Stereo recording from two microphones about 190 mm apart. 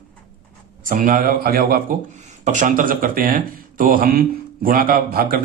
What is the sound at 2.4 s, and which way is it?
Speech, 40° right (ahead or behind).